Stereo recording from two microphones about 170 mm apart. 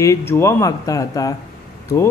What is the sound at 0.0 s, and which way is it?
Speech, 15° left (ahead or behind).